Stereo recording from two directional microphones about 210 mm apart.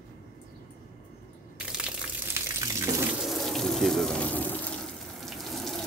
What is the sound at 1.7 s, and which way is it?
Water, 5° right (ahead or behind).